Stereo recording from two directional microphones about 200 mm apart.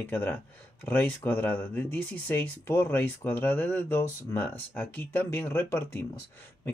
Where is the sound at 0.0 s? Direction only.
10° left (ahead or behind).